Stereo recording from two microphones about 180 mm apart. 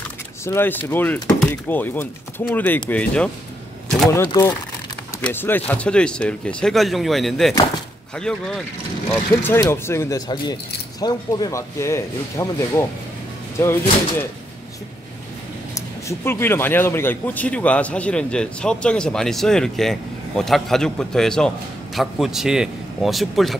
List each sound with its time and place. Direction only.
0.5 s speech: 10° left (ahead or behind)
4.3 s a man's voice: 20° left (ahead or behind)
16.1 s a man's voice: 15° left (ahead or behind)